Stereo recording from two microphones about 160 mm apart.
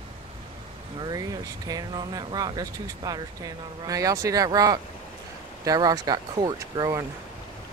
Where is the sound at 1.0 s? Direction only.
25° right (ahead or behind).